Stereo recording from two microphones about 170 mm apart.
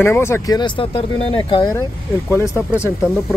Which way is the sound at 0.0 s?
15° left (ahead or behind).